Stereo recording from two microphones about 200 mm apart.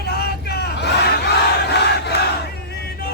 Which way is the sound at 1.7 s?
55° left (ahead or behind).